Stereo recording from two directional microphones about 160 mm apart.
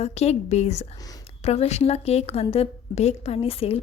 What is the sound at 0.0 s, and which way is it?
A woman's voice, 40° left (ahead or behind).